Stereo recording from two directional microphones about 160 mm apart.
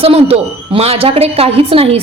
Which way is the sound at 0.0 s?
40° right (ahead or behind).